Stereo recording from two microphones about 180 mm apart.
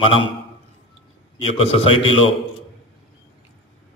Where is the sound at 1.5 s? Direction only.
30° left (ahead or behind).